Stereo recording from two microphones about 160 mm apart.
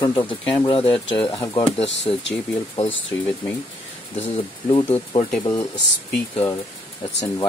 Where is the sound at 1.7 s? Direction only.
40° left (ahead or behind).